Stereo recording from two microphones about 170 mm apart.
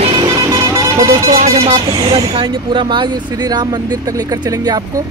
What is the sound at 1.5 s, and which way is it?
Speech, 30° right (ahead or behind).